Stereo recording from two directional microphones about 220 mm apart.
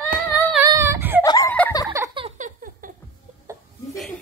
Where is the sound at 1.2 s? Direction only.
15° left (ahead or behind).